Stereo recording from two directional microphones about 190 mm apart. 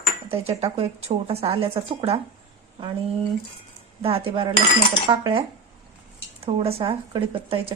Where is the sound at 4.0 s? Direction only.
30° right (ahead or behind).